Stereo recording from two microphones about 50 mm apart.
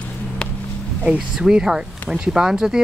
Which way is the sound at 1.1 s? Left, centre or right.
Centre.